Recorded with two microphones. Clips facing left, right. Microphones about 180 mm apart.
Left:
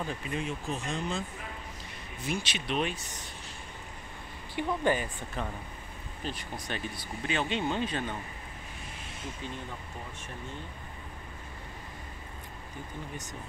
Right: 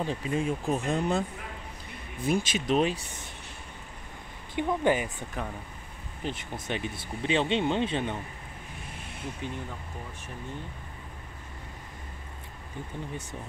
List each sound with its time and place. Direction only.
0.0 s speech: 30° right (ahead or behind)
0.5 s speech: 50° right (ahead or behind)
2.2 s speech: 45° right (ahead or behind)
4.6 s speech: 20° right (ahead or behind)